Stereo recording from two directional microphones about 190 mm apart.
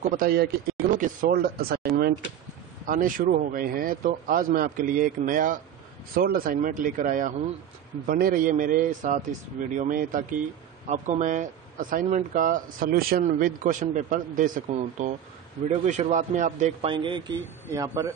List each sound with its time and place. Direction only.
0.0 s speech: 50° right (ahead or behind); by 18.1 s 15° right (ahead or behind)